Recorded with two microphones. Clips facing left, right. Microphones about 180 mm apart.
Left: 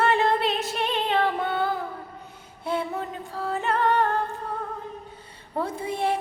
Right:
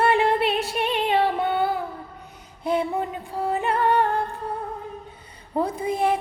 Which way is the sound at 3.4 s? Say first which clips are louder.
Right 2 dB; 15° right (ahead or behind).